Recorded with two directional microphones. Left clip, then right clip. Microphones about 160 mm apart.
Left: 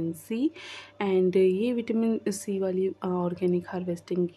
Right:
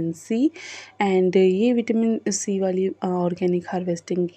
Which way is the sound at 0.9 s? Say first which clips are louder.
Right 5 dB; 25° right (ahead or behind).